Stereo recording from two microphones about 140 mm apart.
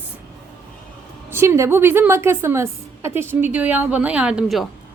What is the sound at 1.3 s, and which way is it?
A woman's voice, 20° right (ahead or behind).